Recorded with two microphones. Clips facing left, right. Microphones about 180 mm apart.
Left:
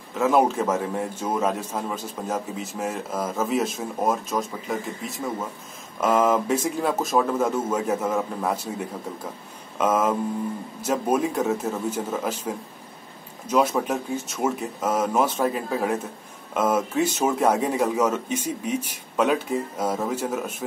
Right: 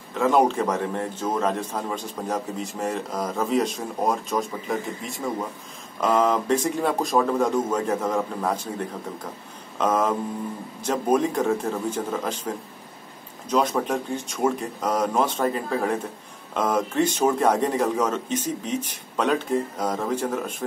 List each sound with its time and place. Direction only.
0.2 s a man's voice: 5° left (ahead or behind)